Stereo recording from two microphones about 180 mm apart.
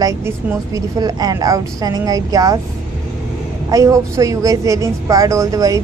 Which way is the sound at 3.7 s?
20° right (ahead or behind).